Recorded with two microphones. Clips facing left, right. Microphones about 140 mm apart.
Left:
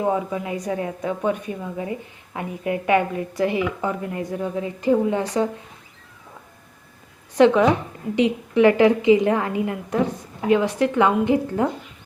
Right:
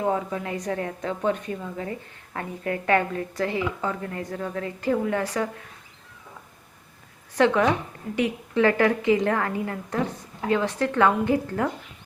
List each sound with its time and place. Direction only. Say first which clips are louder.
0.0 s a woman's voice: left 3 dB; 15° left (ahead or behind)
7.3 s a woman's voice: left 5 dB; 15° left (ahead or behind)